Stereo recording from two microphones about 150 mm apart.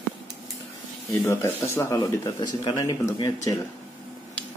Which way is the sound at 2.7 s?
30° left (ahead or behind).